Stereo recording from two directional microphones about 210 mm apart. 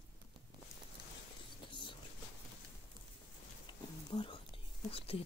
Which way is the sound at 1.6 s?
25° left (ahead or behind).